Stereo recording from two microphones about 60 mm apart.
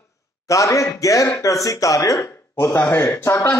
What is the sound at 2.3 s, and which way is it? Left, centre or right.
Speech, left.